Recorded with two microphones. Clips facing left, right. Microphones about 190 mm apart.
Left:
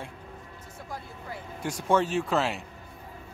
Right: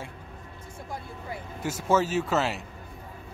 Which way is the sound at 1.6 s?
5° right (ahead or behind).